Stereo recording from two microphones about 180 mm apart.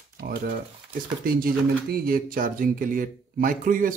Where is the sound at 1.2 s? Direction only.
55° right (ahead or behind).